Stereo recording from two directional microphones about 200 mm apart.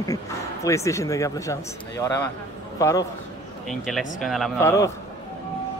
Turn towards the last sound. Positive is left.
turn(degrees=15)  # may be behind; listen again after turning